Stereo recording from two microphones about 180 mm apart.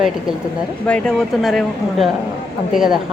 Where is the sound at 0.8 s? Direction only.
5° left (ahead or behind).